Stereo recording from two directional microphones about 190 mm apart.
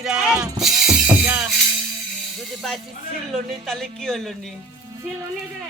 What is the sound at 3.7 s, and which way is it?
Speech, centre (ahead or behind).